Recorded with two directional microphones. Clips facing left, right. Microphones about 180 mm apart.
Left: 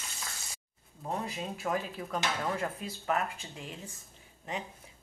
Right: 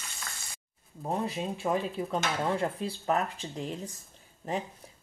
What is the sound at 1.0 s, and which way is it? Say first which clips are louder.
Speech: right 4 dB; 30° right (ahead or behind).